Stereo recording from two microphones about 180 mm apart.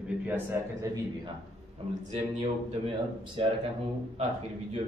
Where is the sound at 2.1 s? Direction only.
40° right (ahead or behind).